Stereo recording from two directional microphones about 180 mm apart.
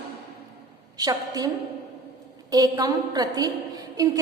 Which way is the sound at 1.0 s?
20° right (ahead or behind).